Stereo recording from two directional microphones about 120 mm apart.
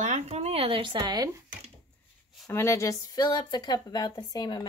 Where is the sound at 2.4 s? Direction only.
25° left (ahead or behind).